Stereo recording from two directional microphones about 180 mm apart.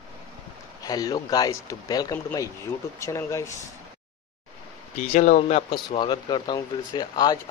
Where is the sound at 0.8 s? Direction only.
20° left (ahead or behind).